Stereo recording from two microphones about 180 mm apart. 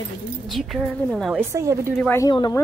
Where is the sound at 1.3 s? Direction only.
15° right (ahead or behind).